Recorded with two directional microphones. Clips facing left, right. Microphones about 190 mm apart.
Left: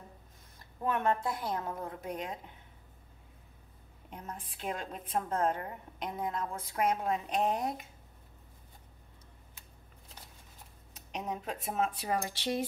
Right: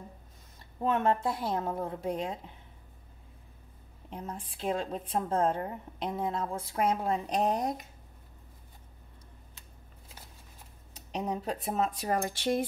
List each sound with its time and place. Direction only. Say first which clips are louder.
0.8 s a woman's voice: right 3 dB; 25° right (ahead or behind)
4.1 s a woman's voice: right 4 dB; 30° right (ahead or behind)
11.1 s a woman's voice: right 4 dB; 35° right (ahead or behind); by 12.6 s 50° right (ahead or behind)